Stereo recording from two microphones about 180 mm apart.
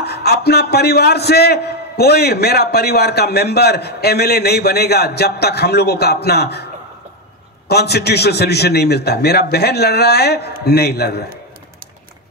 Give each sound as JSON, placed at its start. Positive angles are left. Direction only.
{"t": 0.0, "sound": "a man's voice", "side_deg": 60}